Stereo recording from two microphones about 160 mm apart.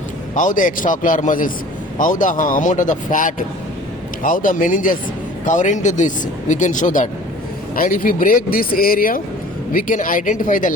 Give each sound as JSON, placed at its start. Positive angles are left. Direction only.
{"t": 0.3, "sound": "speech", "side_deg": 55}